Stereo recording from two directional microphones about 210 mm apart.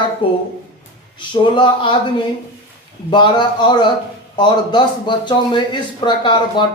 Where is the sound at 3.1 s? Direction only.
20° left (ahead or behind).